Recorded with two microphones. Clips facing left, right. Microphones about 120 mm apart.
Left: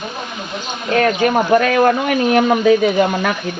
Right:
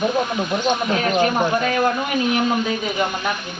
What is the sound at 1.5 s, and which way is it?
Speech, 65° left (ahead or behind).